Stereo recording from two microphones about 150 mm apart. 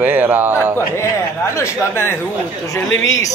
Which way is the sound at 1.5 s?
20° left (ahead or behind).